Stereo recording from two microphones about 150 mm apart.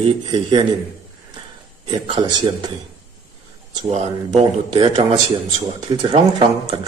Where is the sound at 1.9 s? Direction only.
30° right (ahead or behind).